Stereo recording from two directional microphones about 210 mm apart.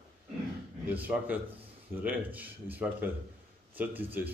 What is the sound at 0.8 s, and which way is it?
Speech, 10° right (ahead or behind).